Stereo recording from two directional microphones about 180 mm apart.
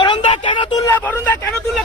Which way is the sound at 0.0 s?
30° left (ahead or behind).